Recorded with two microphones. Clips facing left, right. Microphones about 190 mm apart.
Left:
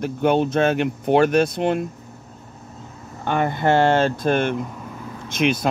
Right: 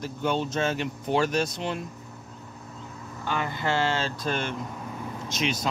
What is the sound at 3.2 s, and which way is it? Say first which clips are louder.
Speech: left 9 dB; 55° left (ahead or behind).